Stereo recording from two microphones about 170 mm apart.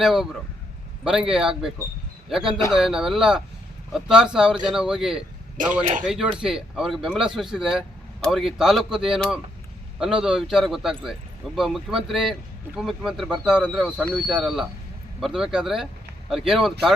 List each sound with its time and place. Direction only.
0.0 s speech: centre (ahead or behind)